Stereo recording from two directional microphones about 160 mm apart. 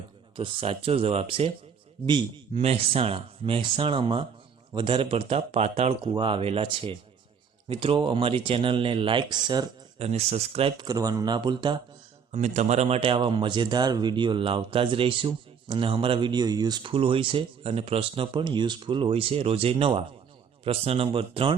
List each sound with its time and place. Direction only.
0.3 s speech: 35° right (ahead or behind)
10.0 s speech: 40° right (ahead or behind)
10.8 s speech: 20° right (ahead or behind)
12.3 s speech: 45° right (ahead or behind)